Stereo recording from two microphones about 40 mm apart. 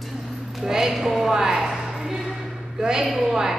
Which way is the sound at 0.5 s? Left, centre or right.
Centre.